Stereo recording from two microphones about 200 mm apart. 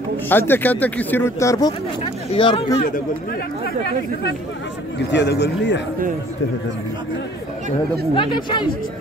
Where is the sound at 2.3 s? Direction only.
25° left (ahead or behind).